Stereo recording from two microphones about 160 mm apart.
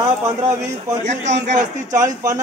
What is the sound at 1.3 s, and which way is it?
Speech, 90° right.